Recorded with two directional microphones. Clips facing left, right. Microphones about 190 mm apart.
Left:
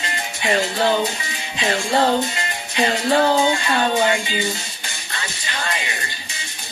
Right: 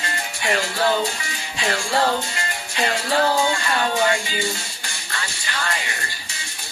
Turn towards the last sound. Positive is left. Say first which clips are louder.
# left 1 dB
turn(degrees=20)  # may be behind; listen again after turning